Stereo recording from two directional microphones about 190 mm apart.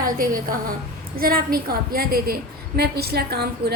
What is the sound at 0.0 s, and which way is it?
A woman's voice, 50° right (ahead or behind).